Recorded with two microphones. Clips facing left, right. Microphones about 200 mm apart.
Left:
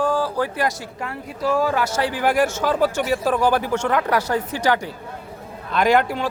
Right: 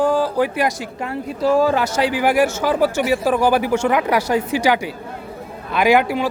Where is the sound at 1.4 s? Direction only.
25° right (ahead or behind).